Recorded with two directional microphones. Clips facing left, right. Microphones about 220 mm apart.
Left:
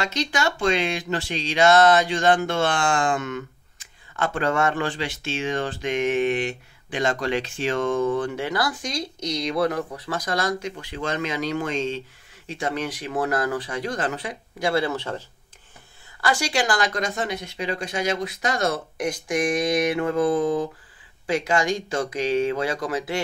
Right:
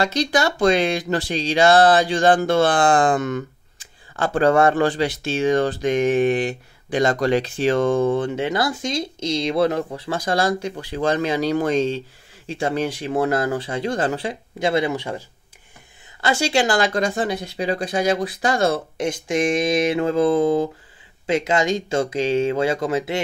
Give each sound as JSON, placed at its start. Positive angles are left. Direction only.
{"t": 0.0, "sound": "speech", "side_deg": -35}
{"t": 16.2, "sound": "speech", "side_deg": -25}